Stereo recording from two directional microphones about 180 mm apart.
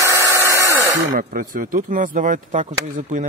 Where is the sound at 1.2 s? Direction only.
50° right (ahead or behind).